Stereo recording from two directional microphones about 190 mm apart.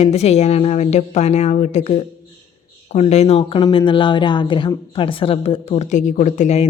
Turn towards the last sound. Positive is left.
turn(degrees=35)  # may be behind; listen again after turning